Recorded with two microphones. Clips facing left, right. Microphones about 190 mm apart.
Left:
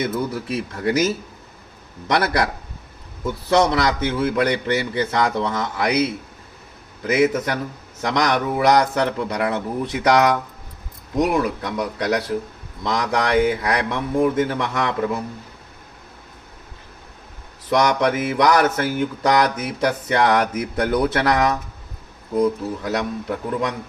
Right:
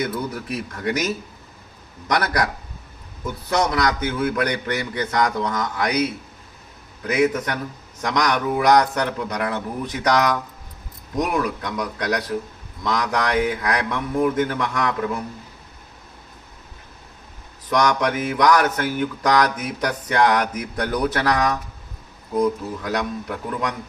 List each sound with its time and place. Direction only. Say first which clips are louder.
0.0 s mantra: left 2 dB; 25° left (ahead or behind)
3.5 s mantra: left 3 dB; 30° left (ahead or behind)
7.1 s mantra: left 2 dB; 25° left (ahead or behind)
17.7 s mantra: left 2 dB; 25° left (ahead or behind)
22.8 s mantra: left 1 dB; 25° left (ahead or behind)